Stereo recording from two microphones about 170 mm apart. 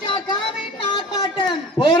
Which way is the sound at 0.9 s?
25° left (ahead or behind).